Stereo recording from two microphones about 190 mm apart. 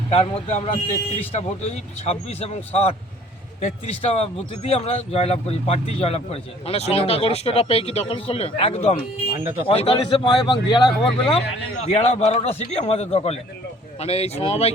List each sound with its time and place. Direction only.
0.1 s a man's voice: 35° left (ahead or behind)
11.9 s speech: 35° left (ahead or behind)